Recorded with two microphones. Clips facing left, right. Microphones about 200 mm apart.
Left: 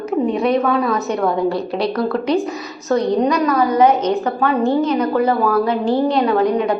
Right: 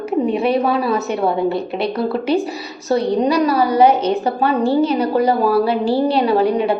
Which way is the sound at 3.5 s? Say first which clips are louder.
Even; 35° right (ahead or behind).